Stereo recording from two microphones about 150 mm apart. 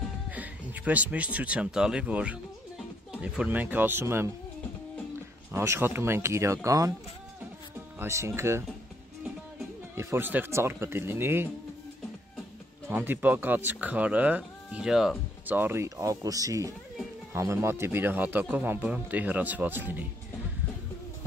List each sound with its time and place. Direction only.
0.3 s speech: 10° right (ahead or behind)
5.5 s speech: 15° right (ahead or behind)
8.0 s speech: 15° right (ahead or behind)
9.9 s speech: 15° right (ahead or behind)
12.8 s speech: 15° right (ahead or behind)